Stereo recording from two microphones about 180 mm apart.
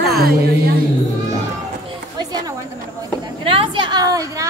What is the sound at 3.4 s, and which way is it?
A woman's voice, 30° right (ahead or behind).